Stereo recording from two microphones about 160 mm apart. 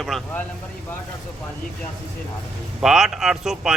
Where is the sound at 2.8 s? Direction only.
5° right (ahead or behind).